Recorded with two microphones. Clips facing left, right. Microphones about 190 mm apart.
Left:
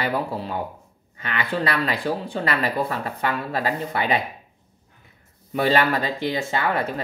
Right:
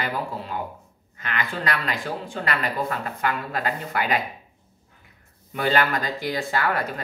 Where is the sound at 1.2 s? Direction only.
35° left (ahead or behind).